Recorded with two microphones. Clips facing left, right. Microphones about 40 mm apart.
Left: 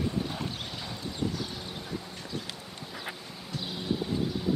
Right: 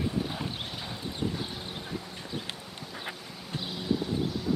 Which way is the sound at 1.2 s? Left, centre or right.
Right.